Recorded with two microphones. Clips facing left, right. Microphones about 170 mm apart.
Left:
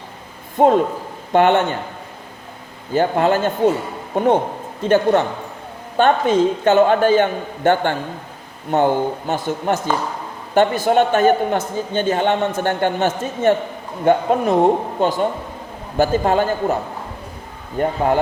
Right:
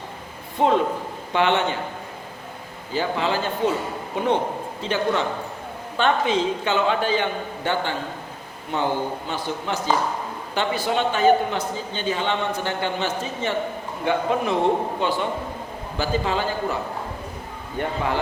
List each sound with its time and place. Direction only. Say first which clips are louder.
0.6 s a man's voice: left 5 dB; 50° left (ahead or behind)
2.9 s a man's voice: left 7 dB; 50° left (ahead or behind)
17.7 s a man's voice: left 7 dB; 45° left (ahead or behind)